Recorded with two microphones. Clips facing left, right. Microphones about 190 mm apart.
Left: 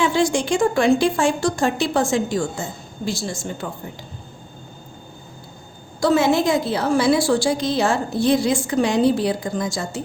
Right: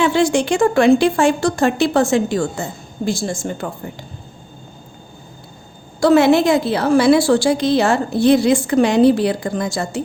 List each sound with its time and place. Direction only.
0.0 s a woman's voice: 65° right (ahead or behind)
3.1 s a woman's voice: 50° right (ahead or behind)
6.0 s a woman's voice: 65° right (ahead or behind)